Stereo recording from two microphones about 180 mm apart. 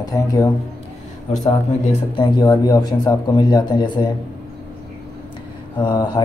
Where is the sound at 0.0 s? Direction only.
20° left (ahead or behind).